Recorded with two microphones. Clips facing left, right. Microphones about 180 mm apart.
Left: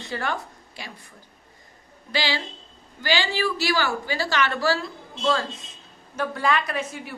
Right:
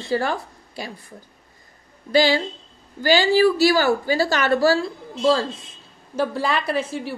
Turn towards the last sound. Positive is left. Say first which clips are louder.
# right 6 dB
turn(degrees=-30)  # may be behind; listen again after turning